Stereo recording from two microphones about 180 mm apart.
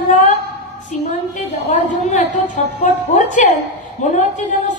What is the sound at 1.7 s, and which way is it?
A woman's voice, 40° left (ahead or behind).